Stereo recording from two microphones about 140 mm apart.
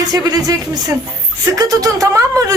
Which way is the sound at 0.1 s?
25° right (ahead or behind).